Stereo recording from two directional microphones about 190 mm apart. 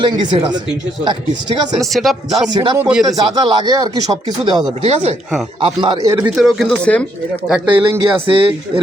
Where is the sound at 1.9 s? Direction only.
Centre (ahead or behind).